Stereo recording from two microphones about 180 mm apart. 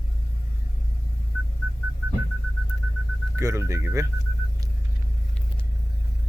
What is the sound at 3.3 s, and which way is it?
Speech, 15° right (ahead or behind).